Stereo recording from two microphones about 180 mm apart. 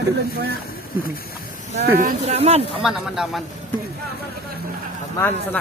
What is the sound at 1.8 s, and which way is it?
Speech, 55° right (ahead or behind).